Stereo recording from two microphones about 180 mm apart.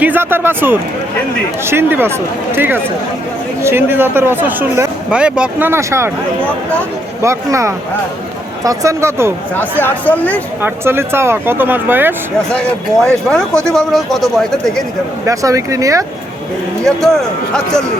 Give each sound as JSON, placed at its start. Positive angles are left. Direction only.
{"t": 0.0, "sound": "speech", "side_deg": -10}
{"t": 7.2, "sound": "speech", "side_deg": -15}
{"t": 9.8, "sound": "speech", "side_deg": 10}
{"t": 10.6, "sound": "speech", "side_deg": -15}
{"t": 13.1, "sound": "speech", "side_deg": 5}
{"t": 15.3, "sound": "speech", "side_deg": -20}
{"t": 16.8, "sound": "speech", "side_deg": 0}